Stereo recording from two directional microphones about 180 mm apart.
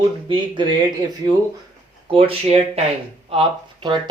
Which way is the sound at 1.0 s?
20° right (ahead or behind).